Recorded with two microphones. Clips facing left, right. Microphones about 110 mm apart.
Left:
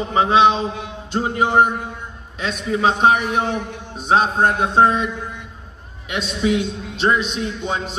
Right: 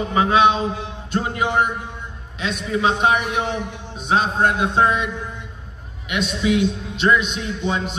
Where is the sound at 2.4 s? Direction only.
40° left (ahead or behind).